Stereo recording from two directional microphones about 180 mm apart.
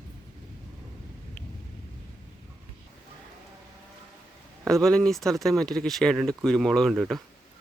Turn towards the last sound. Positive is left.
turn(degrees=0)  # may be behind; listen again after turning